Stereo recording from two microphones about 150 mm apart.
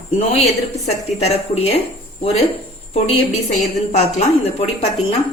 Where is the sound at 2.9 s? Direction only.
50° left (ahead or behind).